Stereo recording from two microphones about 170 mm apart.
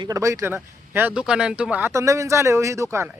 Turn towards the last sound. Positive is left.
turn(degrees=-15)  # may be behind; listen again after turning